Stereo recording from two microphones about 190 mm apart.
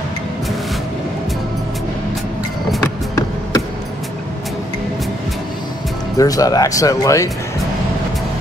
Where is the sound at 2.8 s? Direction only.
15° left (ahead or behind).